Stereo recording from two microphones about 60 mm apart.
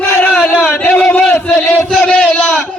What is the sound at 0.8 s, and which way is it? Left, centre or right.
Speech, left.